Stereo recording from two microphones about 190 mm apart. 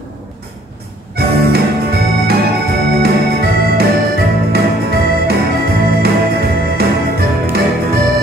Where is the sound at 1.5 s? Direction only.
55° right (ahead or behind).